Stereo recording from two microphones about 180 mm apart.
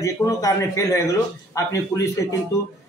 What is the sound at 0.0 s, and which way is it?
A man's voice, 20° left (ahead or behind).